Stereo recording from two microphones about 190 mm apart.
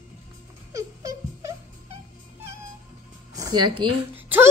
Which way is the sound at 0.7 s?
20° right (ahead or behind).